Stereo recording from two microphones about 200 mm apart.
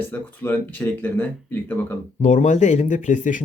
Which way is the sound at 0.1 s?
10° left (ahead or behind).